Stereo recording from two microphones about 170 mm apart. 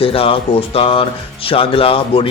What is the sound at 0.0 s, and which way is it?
Speech, 35° left (ahead or behind).